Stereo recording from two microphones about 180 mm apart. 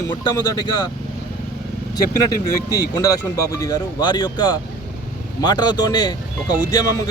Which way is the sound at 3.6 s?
20° left (ahead or behind).